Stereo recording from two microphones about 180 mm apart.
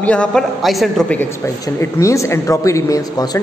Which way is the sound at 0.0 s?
5° left (ahead or behind).